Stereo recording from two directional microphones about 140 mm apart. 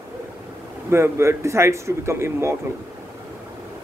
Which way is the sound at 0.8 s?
20° right (ahead or behind).